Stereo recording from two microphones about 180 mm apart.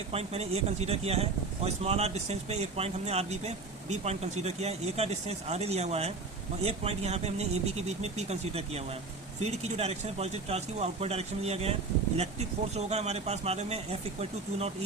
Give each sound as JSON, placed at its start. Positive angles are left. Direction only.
{"t": 0.1, "sound": "speech", "side_deg": -35}